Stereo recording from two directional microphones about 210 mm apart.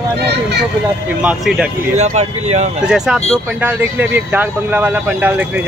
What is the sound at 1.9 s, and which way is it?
Speech, 30° right (ahead or behind).